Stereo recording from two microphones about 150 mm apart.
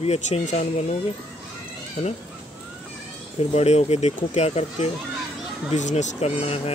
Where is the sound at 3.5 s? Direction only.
45° left (ahead or behind).